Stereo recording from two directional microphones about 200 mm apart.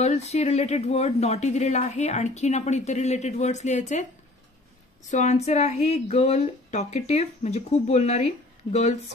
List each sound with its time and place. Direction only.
0.0 s speech: 30° left (ahead or behind)
5.1 s speech: 35° left (ahead or behind)